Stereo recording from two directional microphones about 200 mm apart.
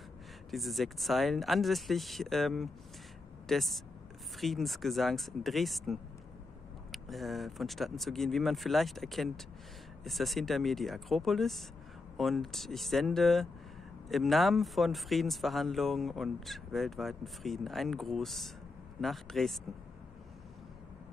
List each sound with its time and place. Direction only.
0.5 s speech: centre (ahead or behind)